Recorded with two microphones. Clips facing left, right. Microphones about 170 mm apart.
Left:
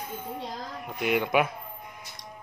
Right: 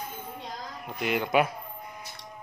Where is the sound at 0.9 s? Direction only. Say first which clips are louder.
Left 2 dB; centre (ahead or behind).